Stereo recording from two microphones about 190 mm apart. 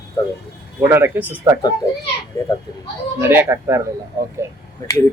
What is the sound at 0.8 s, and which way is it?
Speech, 10° right (ahead or behind).